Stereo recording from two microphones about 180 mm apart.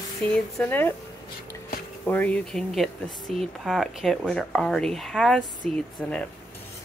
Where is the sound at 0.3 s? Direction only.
10° left (ahead or behind).